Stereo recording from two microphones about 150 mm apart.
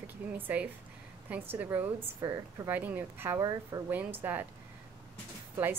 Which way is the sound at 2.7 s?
10° right (ahead or behind).